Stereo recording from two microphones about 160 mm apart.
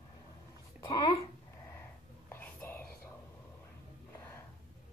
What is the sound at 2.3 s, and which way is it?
Whispering, 15° left (ahead or behind).